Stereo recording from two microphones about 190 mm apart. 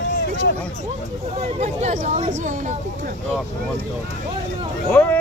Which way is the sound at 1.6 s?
35° right (ahead or behind).